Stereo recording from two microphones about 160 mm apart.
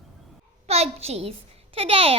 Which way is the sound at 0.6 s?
40° right (ahead or behind).